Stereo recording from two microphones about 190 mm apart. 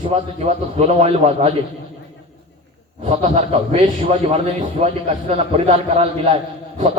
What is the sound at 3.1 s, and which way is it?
A man's voice, 35° right (ahead or behind).